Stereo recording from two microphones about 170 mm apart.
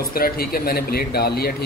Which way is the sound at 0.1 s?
60° left (ahead or behind).